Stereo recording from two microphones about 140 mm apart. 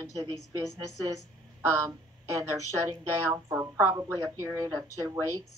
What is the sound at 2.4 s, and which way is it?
A woman's voice, 20° right (ahead or behind).